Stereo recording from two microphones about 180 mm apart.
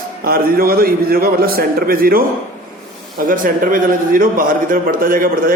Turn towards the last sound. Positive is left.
turn(degrees=-50)  # may be behind; listen again after turning